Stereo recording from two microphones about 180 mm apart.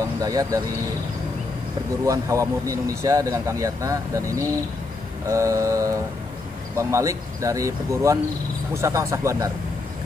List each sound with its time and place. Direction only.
0.2 s speech: 20° right (ahead or behind)
2.0 s speech: 15° right (ahead or behind)